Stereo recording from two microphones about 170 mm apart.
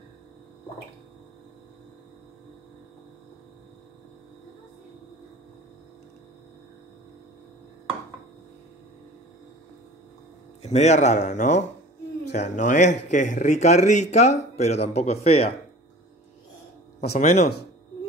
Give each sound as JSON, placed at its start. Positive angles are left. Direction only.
{"t": 10.6, "sound": "speech", "side_deg": 40}
{"t": 17.0, "sound": "speech", "side_deg": 40}